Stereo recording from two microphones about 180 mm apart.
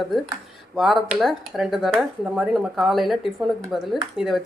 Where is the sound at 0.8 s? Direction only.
Centre (ahead or behind).